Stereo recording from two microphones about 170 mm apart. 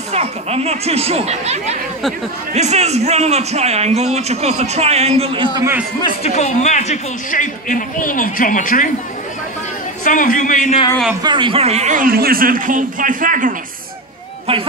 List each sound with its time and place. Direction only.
0.1 s a man's voice: 40° right (ahead or behind)
6.2 s speech: 45° left (ahead or behind)
10.0 s speech: 50° left (ahead or behind)
11.2 s a man's voice: 30° right (ahead or behind); by 13.6 s 50° right (ahead or behind)
14.5 s a man's voice: 35° right (ahead or behind)